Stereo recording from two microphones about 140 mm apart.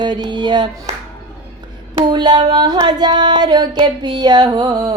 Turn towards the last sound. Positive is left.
turn(degrees=-25)  # may be behind; listen again after turning